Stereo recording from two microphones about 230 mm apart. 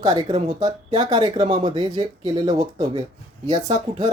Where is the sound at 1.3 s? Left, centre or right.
Right.